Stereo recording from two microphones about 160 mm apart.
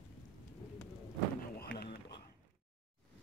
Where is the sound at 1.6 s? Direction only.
80° left.